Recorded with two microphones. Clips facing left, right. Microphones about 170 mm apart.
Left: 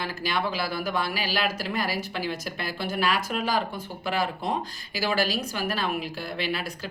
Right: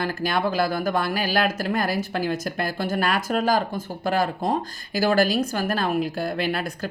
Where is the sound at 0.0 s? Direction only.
50° right (ahead or behind).